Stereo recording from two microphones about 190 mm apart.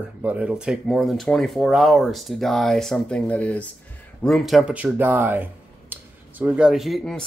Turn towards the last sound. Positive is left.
turn(degrees=5)  # may be behind; listen again after turning